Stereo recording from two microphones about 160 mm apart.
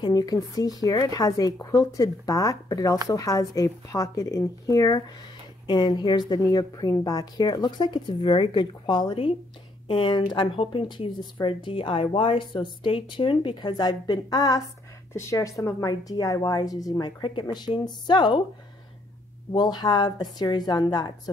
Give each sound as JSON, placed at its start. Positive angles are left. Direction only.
{"t": 0.0, "sound": "a woman's voice", "side_deg": 25}
{"t": 19.5, "sound": "a woman's voice", "side_deg": 25}